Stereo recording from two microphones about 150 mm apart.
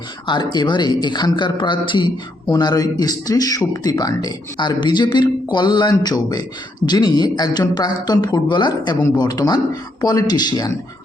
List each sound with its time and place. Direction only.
0.3 s speech: 30° left (ahead or behind)